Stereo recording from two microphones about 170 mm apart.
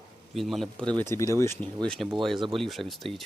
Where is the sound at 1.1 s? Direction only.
15° left (ahead or behind).